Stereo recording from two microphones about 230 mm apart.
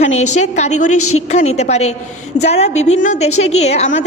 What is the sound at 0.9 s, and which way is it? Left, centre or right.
Speech, left.